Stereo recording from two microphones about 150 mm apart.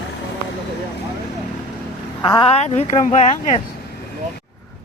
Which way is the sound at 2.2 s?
30° left (ahead or behind).